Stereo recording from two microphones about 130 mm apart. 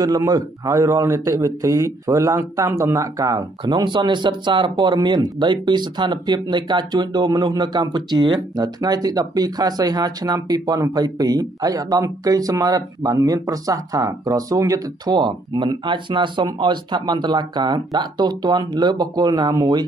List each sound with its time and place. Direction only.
0.0 s a man's voice: 30° right (ahead or behind)